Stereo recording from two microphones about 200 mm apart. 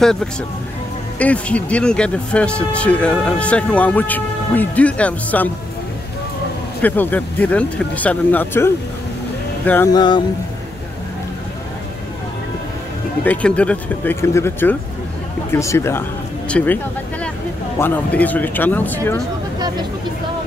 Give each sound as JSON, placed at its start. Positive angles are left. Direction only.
{"t": 0.0, "sound": "speech", "side_deg": 5}
{"t": 6.8, "sound": "speech", "side_deg": 10}
{"t": 9.9, "sound": "speech", "side_deg": 25}
{"t": 13.2, "sound": "speech", "side_deg": 5}